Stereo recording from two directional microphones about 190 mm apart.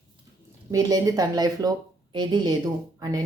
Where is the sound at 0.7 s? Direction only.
20° right (ahead or behind).